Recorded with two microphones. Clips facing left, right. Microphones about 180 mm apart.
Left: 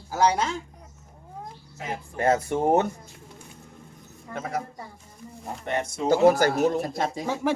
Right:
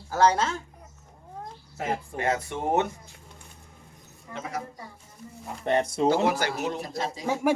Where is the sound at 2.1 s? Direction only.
40° left (ahead or behind).